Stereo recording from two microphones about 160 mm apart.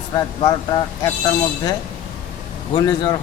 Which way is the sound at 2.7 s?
25° left (ahead or behind).